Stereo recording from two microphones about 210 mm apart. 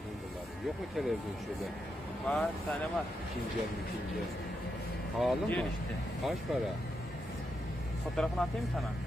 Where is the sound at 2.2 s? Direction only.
5° left (ahead or behind).